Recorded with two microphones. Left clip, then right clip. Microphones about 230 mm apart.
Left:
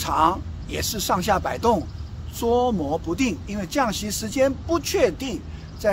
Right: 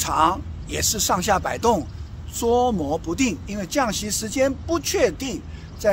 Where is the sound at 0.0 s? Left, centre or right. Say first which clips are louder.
Right 1 dB; centre.